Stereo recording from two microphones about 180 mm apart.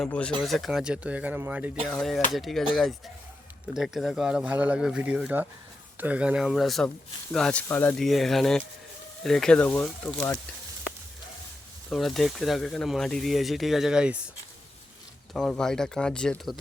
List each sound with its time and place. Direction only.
0.0 s speech: 5° left (ahead or behind)
1.9 s speech: centre (ahead or behind)
3.8 s speech: centre (ahead or behind)
11.9 s speech: centre (ahead or behind)
15.3 s speech: centre (ahead or behind)